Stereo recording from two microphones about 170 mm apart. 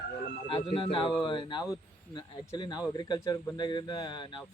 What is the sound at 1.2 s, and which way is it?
A man's voice, 30° left (ahead or behind).